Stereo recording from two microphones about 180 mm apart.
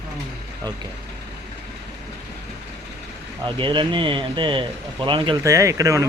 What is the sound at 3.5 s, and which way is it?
A man's voice, 25° right (ahead or behind).